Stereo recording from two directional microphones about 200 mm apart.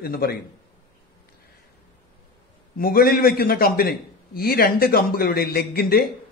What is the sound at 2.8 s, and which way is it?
A man's voice, 50° left (ahead or behind).